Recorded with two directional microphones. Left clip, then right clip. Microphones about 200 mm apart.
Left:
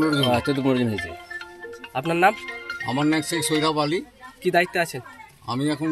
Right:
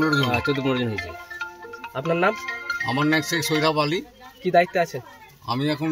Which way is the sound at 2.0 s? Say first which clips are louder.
Left 2 dB; 15° left (ahead or behind).